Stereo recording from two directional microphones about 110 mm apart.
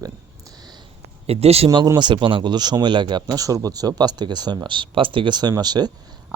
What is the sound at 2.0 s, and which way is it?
Speech, 45° right (ahead or behind).